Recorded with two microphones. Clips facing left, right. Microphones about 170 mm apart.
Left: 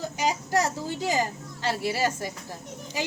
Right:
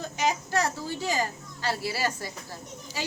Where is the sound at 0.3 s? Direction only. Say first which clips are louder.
Left 2 dB; 20° left (ahead or behind).